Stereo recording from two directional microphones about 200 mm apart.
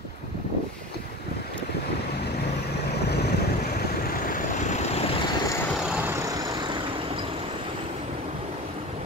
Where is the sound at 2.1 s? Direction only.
55° left (ahead or behind); by 5.0 s 35° left (ahead or behind).